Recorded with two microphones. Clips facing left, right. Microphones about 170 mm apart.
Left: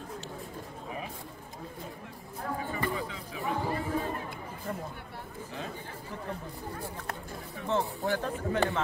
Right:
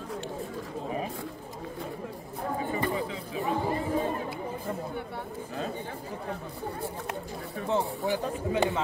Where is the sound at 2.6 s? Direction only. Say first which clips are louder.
Right 4 dB; 25° right (ahead or behind).